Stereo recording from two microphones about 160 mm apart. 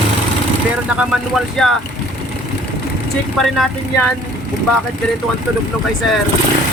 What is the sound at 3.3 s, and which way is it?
Speech, centre (ahead or behind).